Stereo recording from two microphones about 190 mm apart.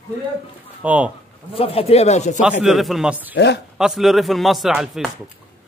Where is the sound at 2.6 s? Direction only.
Centre (ahead or behind).